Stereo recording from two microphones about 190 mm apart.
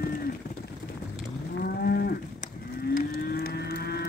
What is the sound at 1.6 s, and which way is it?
Moo, 55° left (ahead or behind).